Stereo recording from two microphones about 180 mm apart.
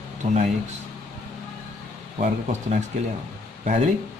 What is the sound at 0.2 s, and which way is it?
Speech, 40° right (ahead or behind).